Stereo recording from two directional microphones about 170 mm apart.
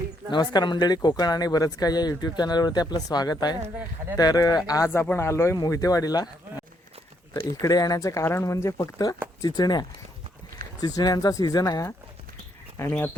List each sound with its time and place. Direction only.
0.3 s speech: 25° left (ahead or behind)
7.6 s speech: 20° left (ahead or behind)